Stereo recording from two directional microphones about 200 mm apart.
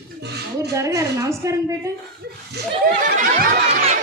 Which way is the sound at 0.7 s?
15° right (ahead or behind).